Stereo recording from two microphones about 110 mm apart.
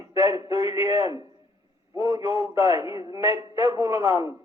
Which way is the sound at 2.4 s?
35° right (ahead or behind).